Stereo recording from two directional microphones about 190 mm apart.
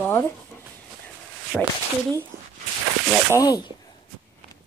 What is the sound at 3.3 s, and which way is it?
Speech, 20° left (ahead or behind).